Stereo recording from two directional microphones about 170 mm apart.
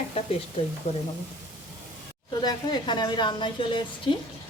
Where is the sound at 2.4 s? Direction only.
25° left (ahead or behind).